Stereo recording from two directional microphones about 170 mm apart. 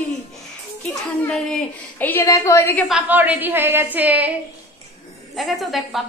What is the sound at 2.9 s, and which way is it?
A woman's voice, 10° right (ahead or behind).